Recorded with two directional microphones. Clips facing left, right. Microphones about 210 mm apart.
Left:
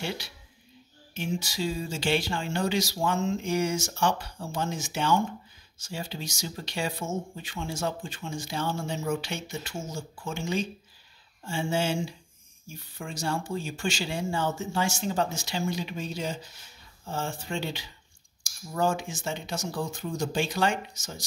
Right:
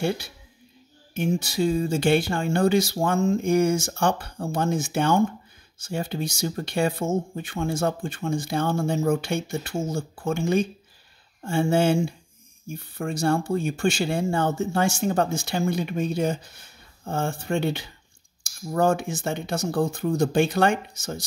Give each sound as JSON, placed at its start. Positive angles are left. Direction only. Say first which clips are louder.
{"t": 1.1, "sound": "speech", "louder": "right 7 dB", "side_deg": -55}